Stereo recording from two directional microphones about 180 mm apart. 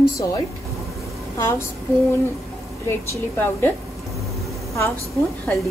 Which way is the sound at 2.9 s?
10° left (ahead or behind).